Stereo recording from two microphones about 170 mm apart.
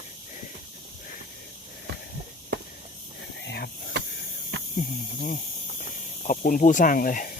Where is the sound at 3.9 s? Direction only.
90° right.